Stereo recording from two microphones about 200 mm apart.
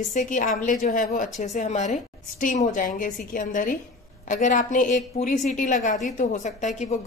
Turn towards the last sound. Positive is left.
turn(degrees=35)  # may be behind; listen again after turning